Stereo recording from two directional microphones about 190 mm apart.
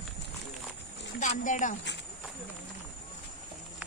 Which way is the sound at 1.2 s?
40° left (ahead or behind).